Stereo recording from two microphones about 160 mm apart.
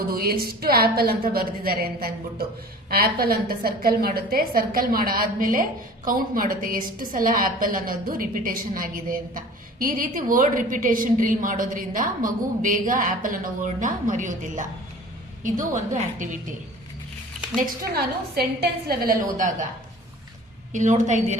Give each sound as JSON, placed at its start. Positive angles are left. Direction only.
{"t": 0.1, "sound": "a woman's voice", "side_deg": -70}
{"t": 17.9, "sound": "a woman's voice", "side_deg": -75}
{"t": 20.7, "sound": "a woman's voice", "side_deg": -50}